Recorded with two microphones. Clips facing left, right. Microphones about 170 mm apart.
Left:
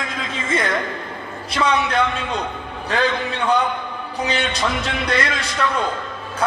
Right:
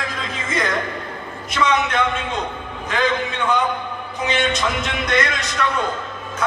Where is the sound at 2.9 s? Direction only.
35° left (ahead or behind).